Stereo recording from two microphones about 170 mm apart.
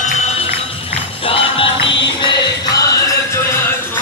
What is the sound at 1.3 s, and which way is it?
Music, 30° left (ahead or behind).